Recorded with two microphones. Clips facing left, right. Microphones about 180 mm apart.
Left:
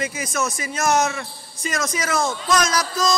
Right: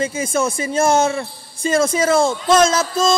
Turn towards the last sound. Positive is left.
turn(degrees=-25)  # may be behind; listen again after turning